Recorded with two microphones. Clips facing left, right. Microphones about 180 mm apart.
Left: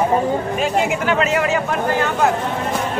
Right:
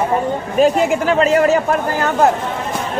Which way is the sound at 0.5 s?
40° right (ahead or behind).